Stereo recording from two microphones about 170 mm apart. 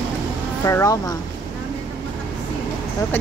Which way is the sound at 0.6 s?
20° left (ahead or behind).